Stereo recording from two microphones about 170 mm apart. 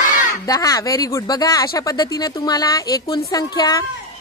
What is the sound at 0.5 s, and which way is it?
Speech, 20° left (ahead or behind).